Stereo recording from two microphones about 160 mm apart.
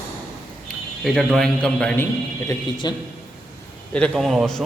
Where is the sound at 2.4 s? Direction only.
25° left (ahead or behind).